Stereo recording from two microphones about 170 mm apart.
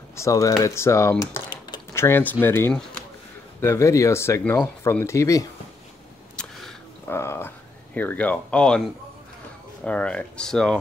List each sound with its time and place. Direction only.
0.1 s speech: 15° left (ahead or behind)
1.2 s typing: 20° left (ahead or behind)
2.4 s speech: 15° left (ahead or behind)
6.4 s a sound: 5° left (ahead or behind)
7.1 s speech: 15° left (ahead or behind)